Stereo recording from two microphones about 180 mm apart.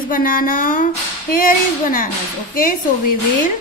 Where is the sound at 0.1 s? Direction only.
50° left (ahead or behind).